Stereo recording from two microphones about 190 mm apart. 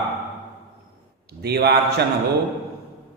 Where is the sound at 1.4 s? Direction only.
60° right (ahead or behind).